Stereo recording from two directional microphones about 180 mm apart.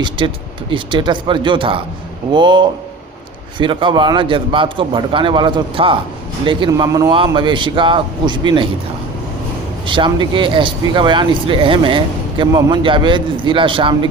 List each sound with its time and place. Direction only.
0.2 s speech: 30° right (ahead or behind)
9.8 s speech: 25° right (ahead or behind)